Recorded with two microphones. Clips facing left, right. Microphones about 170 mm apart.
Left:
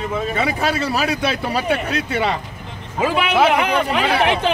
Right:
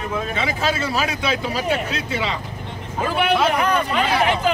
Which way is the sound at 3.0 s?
80° left.